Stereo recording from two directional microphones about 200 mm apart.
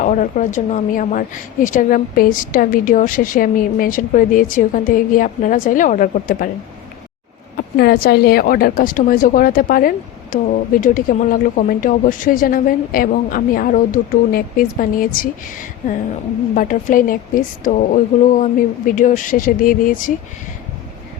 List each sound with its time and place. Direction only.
0.0 s a woman's voice: 40° left (ahead or behind)
7.8 s a woman's voice: 50° left (ahead or behind)